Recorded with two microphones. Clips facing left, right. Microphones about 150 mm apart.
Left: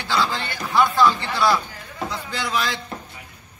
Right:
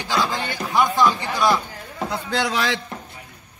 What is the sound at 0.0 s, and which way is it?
A man's voice, 15° right (ahead or behind).